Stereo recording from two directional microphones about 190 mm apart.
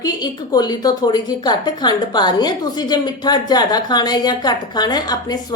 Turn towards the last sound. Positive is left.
turn(degrees=20)  # may be behind; listen again after turning